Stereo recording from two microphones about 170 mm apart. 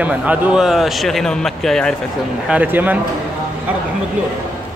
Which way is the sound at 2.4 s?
10° right (ahead or behind).